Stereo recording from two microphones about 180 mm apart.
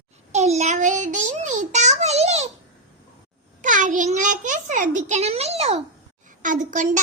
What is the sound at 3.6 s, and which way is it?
A child's voice, 45° right (ahead or behind).